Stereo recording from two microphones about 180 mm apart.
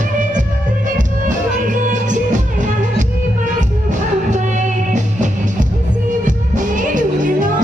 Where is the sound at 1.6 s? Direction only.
45° right (ahead or behind).